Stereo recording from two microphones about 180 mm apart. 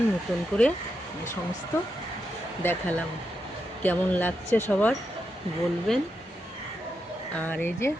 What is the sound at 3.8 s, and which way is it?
Speech, 10° left (ahead or behind).